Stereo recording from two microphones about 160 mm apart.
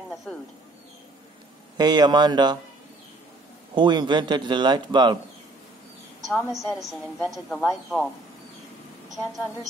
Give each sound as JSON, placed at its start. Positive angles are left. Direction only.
{"t": 0.1, "sound": "bird", "side_deg": 0}
{"t": 1.8, "sound": "speech", "side_deg": -25}
{"t": 3.7, "sound": "speech", "side_deg": -30}
{"t": 6.2, "sound": "a woman's voice", "side_deg": 0}
{"t": 9.1, "sound": "a woman's voice", "side_deg": 0}